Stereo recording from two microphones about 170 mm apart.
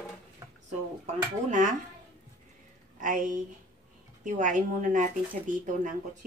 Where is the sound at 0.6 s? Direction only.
45° right (ahead or behind).